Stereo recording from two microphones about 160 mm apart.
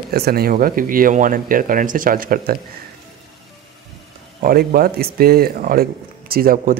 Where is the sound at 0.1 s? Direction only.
75° right (ahead or behind).